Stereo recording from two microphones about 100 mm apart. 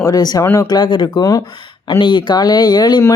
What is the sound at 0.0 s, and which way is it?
A woman's voice, 40° left (ahead or behind).